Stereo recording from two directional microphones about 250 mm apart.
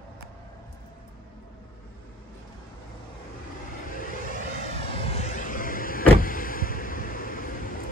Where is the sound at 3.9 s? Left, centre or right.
Left.